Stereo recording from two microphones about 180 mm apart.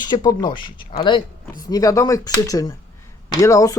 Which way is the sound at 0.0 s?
25° left (ahead or behind).